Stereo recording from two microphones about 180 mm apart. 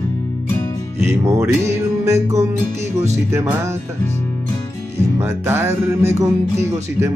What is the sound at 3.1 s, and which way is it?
Music, 15° right (ahead or behind).